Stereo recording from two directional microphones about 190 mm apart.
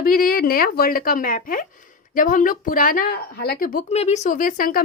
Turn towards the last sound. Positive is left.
turn(degrees=45)  # may be behind; listen again after turning